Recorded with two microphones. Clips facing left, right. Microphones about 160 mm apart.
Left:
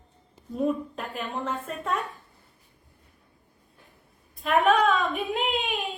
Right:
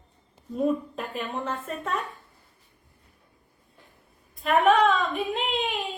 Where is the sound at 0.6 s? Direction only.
5° right (ahead or behind).